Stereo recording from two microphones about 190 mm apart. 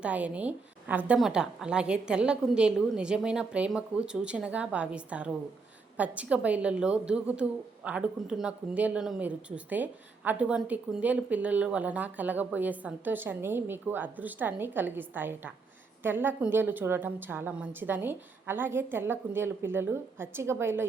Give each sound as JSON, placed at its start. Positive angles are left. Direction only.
{"t": 0.0, "sound": "a woman's voice", "side_deg": -5}